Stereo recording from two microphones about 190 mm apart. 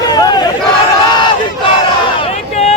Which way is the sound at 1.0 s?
25° left (ahead or behind).